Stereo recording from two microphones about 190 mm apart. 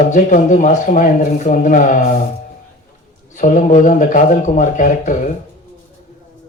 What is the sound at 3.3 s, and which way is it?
Speech, 40° left (ahead or behind).